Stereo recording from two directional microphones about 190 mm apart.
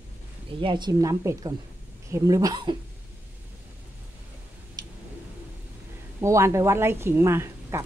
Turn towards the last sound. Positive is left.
turn(degrees=-15)  # may be behind; listen again after turning